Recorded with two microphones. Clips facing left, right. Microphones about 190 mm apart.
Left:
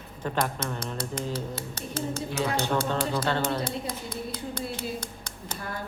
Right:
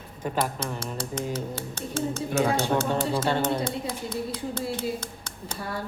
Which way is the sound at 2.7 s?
20° right (ahead or behind).